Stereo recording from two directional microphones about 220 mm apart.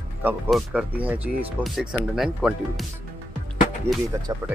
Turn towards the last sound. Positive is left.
turn(degrees=-15)  # may be behind; listen again after turning